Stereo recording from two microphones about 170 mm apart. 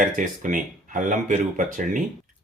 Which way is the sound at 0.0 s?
50° right (ahead or behind).